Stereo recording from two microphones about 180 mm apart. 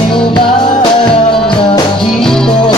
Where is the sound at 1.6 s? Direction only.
30° left (ahead or behind).